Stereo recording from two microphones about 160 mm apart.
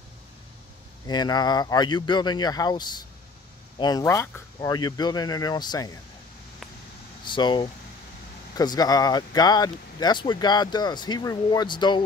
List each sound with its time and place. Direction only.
1.0 s speech: 25° left (ahead or behind)
7.2 s speech: 30° left (ahead or behind)